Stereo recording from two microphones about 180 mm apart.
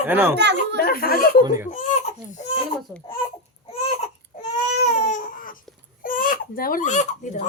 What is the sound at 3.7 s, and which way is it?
Baby cry, 35° left (ahead or behind).